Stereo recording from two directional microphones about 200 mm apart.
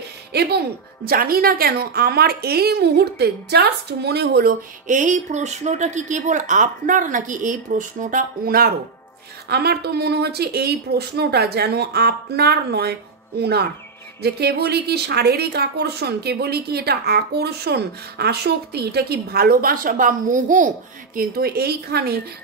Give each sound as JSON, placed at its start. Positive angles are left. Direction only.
{"t": 0.3, "sound": "a woman's voice", "side_deg": -55}